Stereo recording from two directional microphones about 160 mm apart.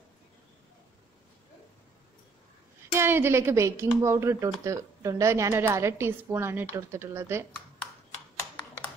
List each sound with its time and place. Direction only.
2.9 s a woman's voice: 15° right (ahead or behind)